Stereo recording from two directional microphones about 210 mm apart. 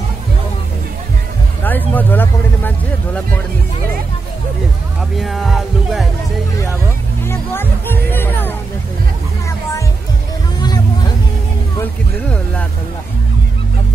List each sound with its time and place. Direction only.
1.6 s a sound: 10° left (ahead or behind)
5.1 s music: centre (ahead or behind)
7.2 s music: 10° left (ahead or behind)
10.6 s music: 20° left (ahead or behind)
11.8 s music: 5° left (ahead or behind)